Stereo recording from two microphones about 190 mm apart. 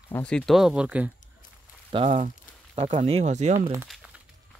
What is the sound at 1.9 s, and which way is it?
Speech, 35° right (ahead or behind).